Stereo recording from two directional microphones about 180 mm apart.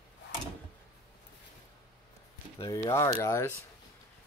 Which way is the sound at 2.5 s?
25° left (ahead or behind).